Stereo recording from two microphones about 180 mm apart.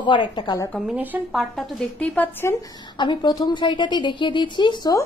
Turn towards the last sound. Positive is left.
turn(degrees=25)  # may be behind; listen again after turning